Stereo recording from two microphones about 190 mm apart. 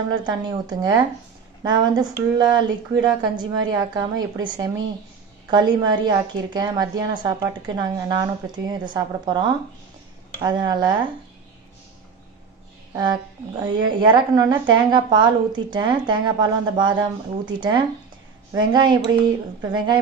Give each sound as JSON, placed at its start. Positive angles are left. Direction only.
{"t": 0.3, "sound": "a woman's voice", "side_deg": -20}
{"t": 12.9, "sound": "a woman's voice", "side_deg": -20}